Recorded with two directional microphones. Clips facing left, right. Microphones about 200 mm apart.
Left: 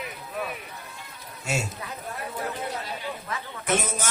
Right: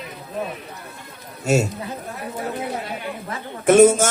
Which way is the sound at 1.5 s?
40° right (ahead or behind).